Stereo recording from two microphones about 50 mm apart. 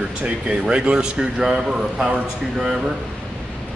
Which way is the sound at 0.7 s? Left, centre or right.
Centre.